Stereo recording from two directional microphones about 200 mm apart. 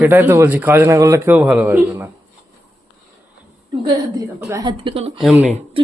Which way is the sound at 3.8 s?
20° right (ahead or behind).